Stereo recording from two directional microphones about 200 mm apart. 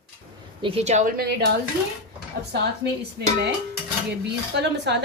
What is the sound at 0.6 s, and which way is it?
Speech, 30° right (ahead or behind).